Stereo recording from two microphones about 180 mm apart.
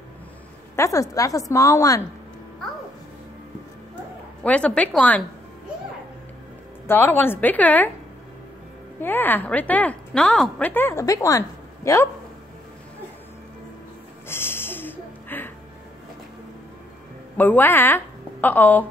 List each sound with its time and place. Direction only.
0.7 s a woman's voice: 15° left (ahead or behind)
4.4 s a woman's voice: 5° left (ahead or behind)
6.9 s a woman's voice: 10° left (ahead or behind)
9.0 s a woman's voice: 10° left (ahead or behind)
14.2 s snort: 15° left (ahead or behind)
17.4 s a woman's voice: 10° left (ahead or behind)